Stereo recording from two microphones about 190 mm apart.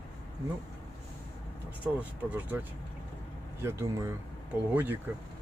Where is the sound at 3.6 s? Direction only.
15° right (ahead or behind).